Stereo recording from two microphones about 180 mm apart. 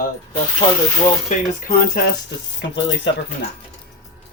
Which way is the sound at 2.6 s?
85° left.